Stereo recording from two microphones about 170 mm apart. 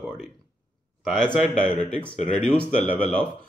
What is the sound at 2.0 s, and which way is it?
Speech, 40° left (ahead or behind).